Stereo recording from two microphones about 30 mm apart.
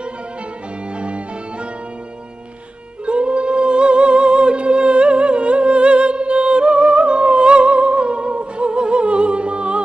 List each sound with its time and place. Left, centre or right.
0.9 s music: right
3.1 s music: right